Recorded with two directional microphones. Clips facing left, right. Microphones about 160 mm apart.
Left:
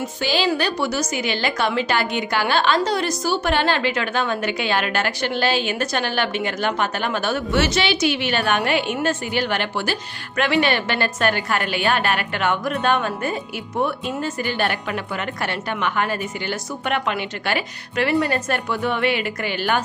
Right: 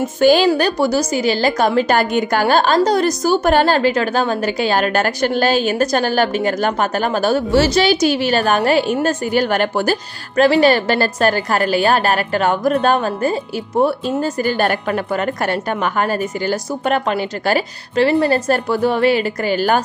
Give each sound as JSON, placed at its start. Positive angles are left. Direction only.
{"t": 0.0, "sound": "a woman's voice", "side_deg": -50}